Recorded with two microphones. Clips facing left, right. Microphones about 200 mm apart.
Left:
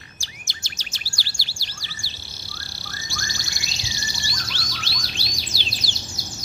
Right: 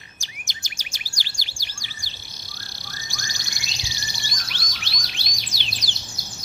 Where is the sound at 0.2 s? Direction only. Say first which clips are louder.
Right 2 dB; 15° right (ahead or behind).